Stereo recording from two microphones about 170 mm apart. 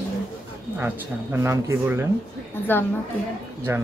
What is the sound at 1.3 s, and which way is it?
Speech, 15° right (ahead or behind).